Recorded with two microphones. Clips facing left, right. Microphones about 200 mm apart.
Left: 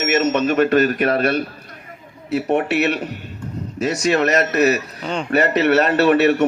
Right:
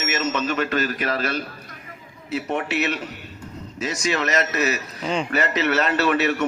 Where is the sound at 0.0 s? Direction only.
65° left (ahead or behind).